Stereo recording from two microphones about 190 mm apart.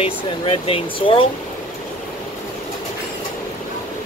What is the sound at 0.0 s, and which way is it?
Speech, 30° left (ahead or behind).